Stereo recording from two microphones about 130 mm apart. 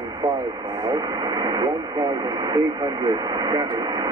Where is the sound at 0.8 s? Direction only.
30° right (ahead or behind).